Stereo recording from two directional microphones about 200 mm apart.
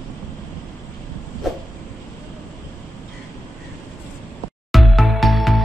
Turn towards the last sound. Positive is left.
turn(degrees=0)  # may be behind; listen again after turning